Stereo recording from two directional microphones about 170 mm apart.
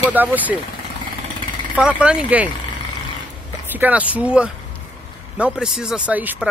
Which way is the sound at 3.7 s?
10° right (ahead or behind).